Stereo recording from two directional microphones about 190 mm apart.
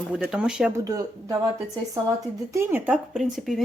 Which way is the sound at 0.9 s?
20° right (ahead or behind).